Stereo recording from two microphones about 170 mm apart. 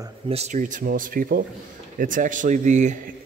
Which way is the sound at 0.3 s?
40° right (ahead or behind).